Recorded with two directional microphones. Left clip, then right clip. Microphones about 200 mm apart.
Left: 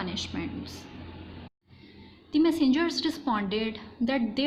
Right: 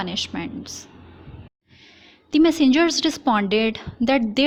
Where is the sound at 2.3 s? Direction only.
45° right (ahead or behind).